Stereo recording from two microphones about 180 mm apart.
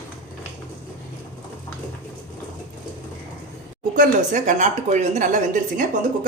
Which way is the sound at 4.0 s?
45° right (ahead or behind).